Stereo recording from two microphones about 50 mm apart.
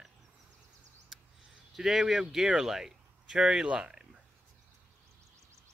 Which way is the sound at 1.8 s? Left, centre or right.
Centre.